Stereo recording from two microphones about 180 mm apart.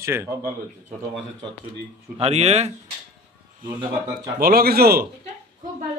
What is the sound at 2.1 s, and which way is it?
Speech, 35° right (ahead or behind).